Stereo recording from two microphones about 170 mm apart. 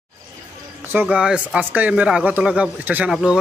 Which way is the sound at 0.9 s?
10° right (ahead or behind).